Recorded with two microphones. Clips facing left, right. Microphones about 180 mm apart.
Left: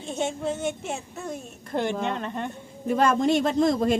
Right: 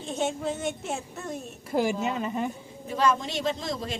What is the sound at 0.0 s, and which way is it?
A woman's voice, centre (ahead or behind).